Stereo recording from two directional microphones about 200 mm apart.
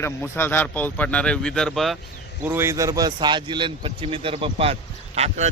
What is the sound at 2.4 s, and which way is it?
A man's voice, 10° right (ahead or behind).